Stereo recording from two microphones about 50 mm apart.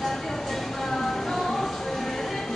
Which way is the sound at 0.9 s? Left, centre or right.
Centre.